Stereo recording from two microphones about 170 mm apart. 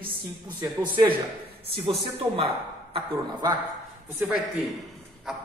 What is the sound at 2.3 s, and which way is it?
Speech, 35° right (ahead or behind).